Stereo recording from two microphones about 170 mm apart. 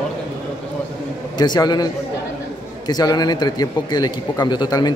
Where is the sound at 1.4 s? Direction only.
25° left (ahead or behind).